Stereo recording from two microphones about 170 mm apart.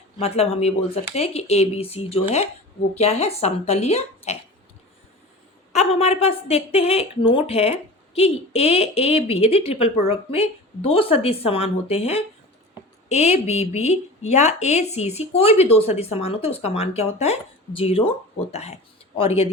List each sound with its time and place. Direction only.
0.2 s a woman's voice: 35° left (ahead or behind)
5.7 s a woman's voice: 35° left (ahead or behind)